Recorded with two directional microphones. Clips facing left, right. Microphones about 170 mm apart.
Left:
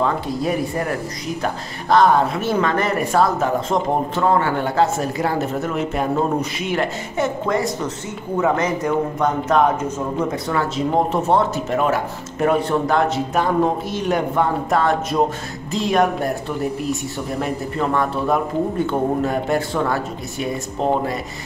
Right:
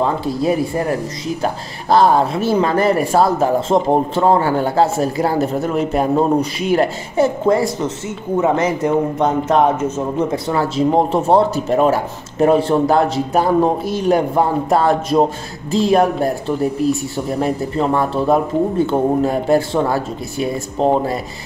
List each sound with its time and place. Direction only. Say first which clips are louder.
0.0 s speech: right 3 dB; 30° right (ahead or behind)